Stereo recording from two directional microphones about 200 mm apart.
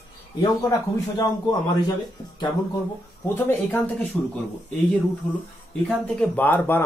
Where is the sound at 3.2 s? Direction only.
10° left (ahead or behind).